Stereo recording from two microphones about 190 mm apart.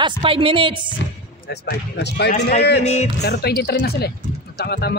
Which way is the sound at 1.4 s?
60° left (ahead or behind).